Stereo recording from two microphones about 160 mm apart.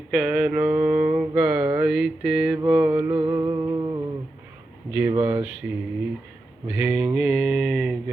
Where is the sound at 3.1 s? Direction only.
25° right (ahead or behind).